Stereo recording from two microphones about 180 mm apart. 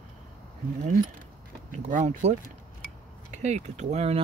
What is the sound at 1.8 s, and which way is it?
Speech, 45° right (ahead or behind).